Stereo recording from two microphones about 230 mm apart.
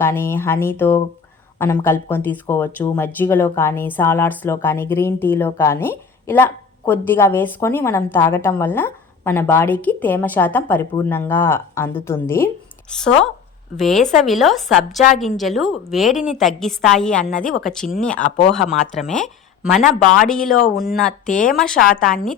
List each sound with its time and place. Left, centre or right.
0.0 s speech: centre
13.7 s a woman's voice: centre
18.2 s speech: left
18.9 s a woman's voice: centre
21.1 s speech: left
21.5 s a woman's voice: centre